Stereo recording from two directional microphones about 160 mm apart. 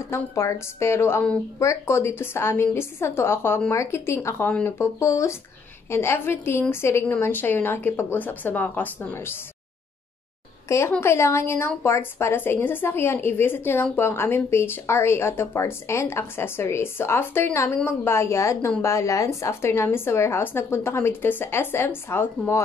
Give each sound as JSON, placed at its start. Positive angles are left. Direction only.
{"t": 0.1, "sound": "a woman's voice", "side_deg": 15}
{"t": 10.7, "sound": "a woman's voice", "side_deg": 15}